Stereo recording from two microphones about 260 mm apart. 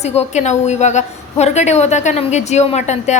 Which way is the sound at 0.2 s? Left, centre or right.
Left.